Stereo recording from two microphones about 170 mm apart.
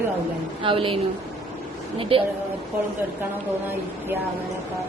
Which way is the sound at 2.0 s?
35° right (ahead or behind).